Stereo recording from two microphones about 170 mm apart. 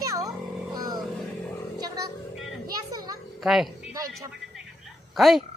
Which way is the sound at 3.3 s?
Centre (ahead or behind).